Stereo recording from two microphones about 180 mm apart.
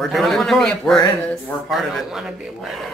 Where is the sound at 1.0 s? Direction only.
15° left (ahead or behind).